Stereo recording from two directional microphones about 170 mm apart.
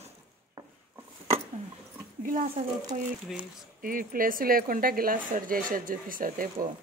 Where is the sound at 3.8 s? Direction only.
55° right (ahead or behind).